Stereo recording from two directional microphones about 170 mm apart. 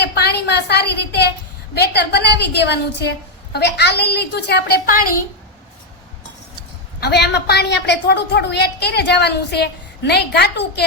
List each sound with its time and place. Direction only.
0.0 s a sound: 70° left (ahead or behind)
1.7 s a woman's voice: 75° left (ahead or behind); by 5.2 s 55° left (ahead or behind)
7.0 s a woman's voice: 75° left (ahead or behind)